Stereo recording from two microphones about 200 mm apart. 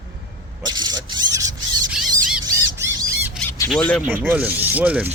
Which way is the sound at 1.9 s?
5° right (ahead or behind).